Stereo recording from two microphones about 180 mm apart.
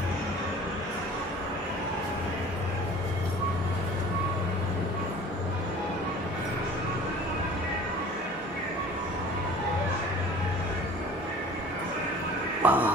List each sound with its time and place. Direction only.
12.6 s music: 10° right (ahead or behind)